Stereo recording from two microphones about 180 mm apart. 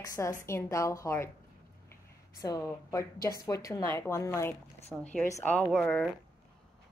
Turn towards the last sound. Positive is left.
turn(degrees=5)  # may be behind; listen again after turning